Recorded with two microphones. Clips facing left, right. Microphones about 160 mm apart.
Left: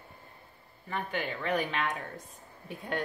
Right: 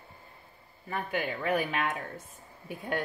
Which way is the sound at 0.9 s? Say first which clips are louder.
Right 2 dB; 10° right (ahead or behind).